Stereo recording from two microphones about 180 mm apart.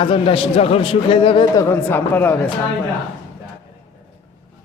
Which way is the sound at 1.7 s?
10° left (ahead or behind).